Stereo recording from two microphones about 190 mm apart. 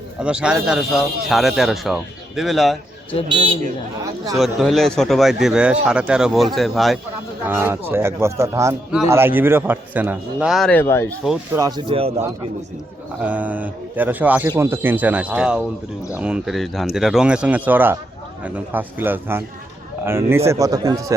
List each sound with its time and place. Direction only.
0.2 s speech: 5° right (ahead or behind)
4.4 s speech: centre (ahead or behind)
7.4 s a man's voice: 10° right (ahead or behind); by 11.1 s 10° left (ahead or behind)
11.9 s speech: 30° right (ahead or behind)
13.2 s a man's voice: 10° right (ahead or behind)